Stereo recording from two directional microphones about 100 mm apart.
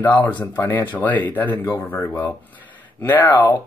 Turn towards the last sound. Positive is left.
turn(degrees=25)  # may be behind; listen again after turning